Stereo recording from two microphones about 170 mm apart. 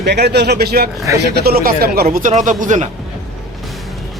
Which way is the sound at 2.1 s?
50° right (ahead or behind).